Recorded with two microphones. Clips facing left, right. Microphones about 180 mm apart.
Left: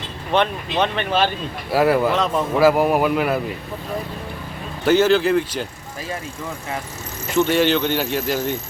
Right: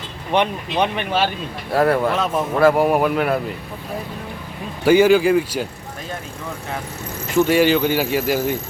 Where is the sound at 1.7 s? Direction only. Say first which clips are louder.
Even; 5° left (ahead or behind).